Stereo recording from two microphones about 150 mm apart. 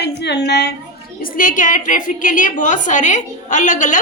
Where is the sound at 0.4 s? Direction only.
90° left.